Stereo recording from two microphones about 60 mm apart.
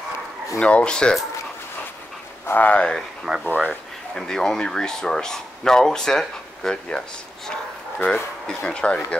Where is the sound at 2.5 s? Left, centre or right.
Left.